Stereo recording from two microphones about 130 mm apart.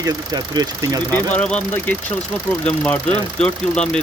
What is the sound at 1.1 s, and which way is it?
Speech, 10° left (ahead or behind).